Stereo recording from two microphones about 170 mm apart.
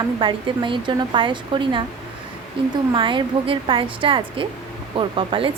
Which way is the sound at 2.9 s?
30° right (ahead or behind).